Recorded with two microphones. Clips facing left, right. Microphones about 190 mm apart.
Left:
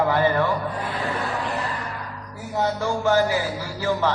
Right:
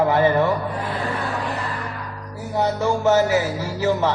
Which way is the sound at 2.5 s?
20° right (ahead or behind).